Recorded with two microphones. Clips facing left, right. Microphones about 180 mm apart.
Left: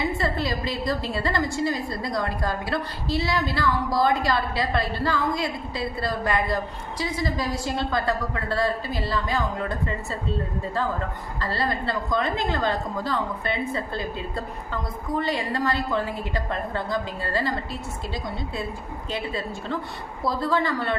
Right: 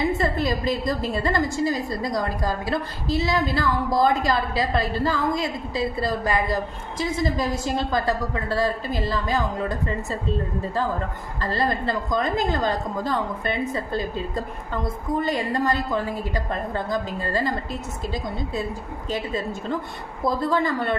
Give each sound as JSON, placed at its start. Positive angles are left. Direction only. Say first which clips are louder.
{"t": 0.2, "sound": "a woman's voice", "louder": "right 3 dB", "side_deg": -45}
{"t": 3.1, "sound": "a woman's voice", "louder": "right 3 dB", "side_deg": -45}
{"t": 11.4, "sound": "a woman's voice", "louder": "right 3 dB", "side_deg": -45}
{"t": 20.2, "sound": "a woman's voice", "louder": "right 2 dB", "side_deg": -45}